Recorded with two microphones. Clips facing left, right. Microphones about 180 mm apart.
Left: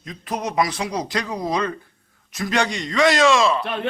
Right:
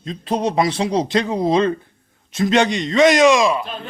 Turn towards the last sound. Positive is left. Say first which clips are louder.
# left 6 dB
turn(degrees=70)  # may be behind; listen again after turning